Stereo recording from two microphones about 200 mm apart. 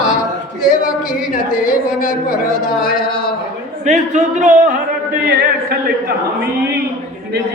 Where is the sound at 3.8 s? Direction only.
35° right (ahead or behind).